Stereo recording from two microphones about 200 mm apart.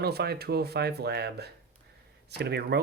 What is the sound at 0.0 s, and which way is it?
Speech, 55° right (ahead or behind).